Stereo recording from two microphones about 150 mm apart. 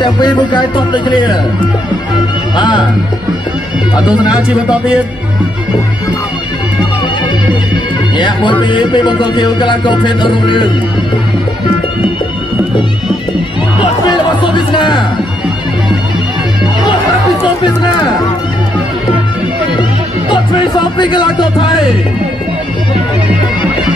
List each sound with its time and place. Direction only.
0.0 s music: 30° left (ahead or behind)
2.5 s speech: 30° left (ahead or behind)
8.2 s music: 30° left (ahead or behind)
14.0 s music: 30° left (ahead or behind)
21.0 s music: 30° left (ahead or behind)